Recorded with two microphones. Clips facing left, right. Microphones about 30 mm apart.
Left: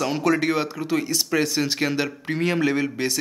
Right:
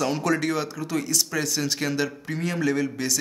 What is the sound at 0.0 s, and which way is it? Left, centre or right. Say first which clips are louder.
A man's voice: left 2 dB; centre.